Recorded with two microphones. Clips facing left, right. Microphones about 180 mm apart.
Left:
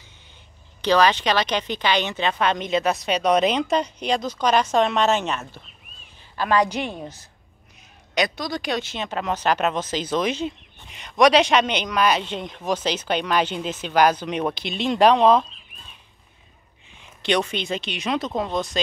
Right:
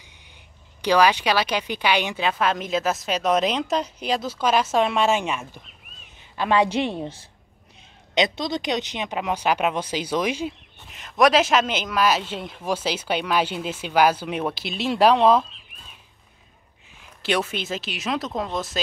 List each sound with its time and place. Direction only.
0.8 s a woman's voice: 10° right (ahead or behind)
6.3 s a woman's voice: 25° right (ahead or behind); by 15.4 s 5° right (ahead or behind)
17.0 s speech: 5° right (ahead or behind)